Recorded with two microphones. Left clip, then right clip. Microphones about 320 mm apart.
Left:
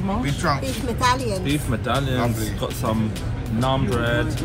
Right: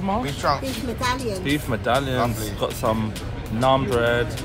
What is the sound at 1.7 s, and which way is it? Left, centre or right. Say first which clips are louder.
Speech: right 4 dB; right.